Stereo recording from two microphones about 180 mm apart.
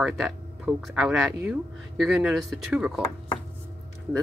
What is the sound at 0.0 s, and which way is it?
Speech, 5° right (ahead or behind).